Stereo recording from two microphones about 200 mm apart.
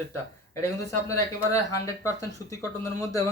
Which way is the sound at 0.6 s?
15° left (ahead or behind).